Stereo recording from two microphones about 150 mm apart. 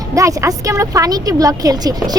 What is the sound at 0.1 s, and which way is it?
Speech, 20° right (ahead or behind).